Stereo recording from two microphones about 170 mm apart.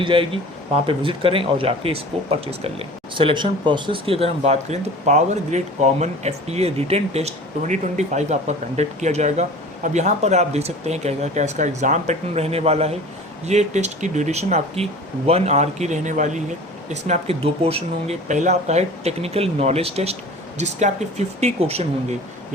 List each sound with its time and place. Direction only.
0.0 s speech: 30° right (ahead or behind)